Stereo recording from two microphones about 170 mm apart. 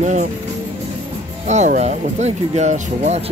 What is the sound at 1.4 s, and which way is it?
Speech, 45° right (ahead or behind).